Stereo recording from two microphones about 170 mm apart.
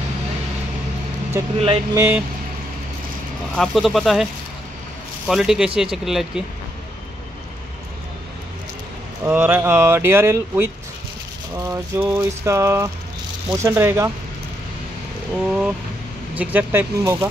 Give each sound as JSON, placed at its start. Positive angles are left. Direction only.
{"t": 1.3, "sound": "speech", "side_deg": -15}
{"t": 3.5, "sound": "speech", "side_deg": 0}
{"t": 9.2, "sound": "speech", "side_deg": -10}
{"t": 15.3, "sound": "speech", "side_deg": -5}